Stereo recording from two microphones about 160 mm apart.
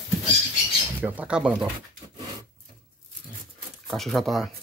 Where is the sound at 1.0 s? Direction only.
10° right (ahead or behind).